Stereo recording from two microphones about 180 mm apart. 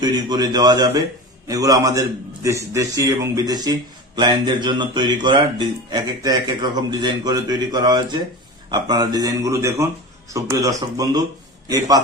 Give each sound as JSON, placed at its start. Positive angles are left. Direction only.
{"t": 0.0, "sound": "speech", "side_deg": -20}